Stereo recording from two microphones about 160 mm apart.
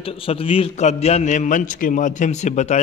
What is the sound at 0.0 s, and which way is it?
A man's voice, 35° left (ahead or behind).